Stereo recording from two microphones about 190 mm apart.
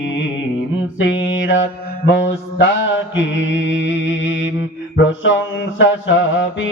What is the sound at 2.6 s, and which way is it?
Mantra, 80° left.